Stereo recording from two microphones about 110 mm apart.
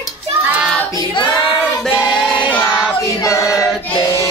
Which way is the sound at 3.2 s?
30° left (ahead or behind).